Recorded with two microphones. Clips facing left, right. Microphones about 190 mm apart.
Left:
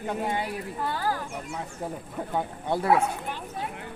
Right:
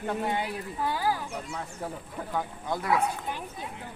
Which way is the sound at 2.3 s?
30° left (ahead or behind).